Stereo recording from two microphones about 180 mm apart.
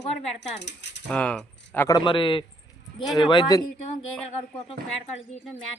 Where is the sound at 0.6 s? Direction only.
70° left (ahead or behind).